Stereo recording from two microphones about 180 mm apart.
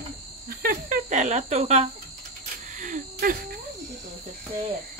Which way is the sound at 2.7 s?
45° right (ahead or behind).